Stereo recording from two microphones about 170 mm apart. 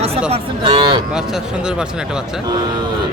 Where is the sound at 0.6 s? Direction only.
25° right (ahead or behind).